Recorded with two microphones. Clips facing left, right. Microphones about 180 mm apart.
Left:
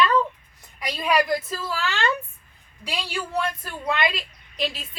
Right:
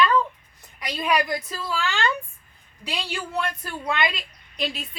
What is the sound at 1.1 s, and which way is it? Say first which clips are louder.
Speech: left 2 dB; centre (ahead or behind).